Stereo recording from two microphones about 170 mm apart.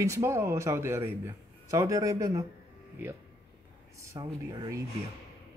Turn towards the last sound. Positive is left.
turn(degrees=-20)  # may be behind; listen again after turning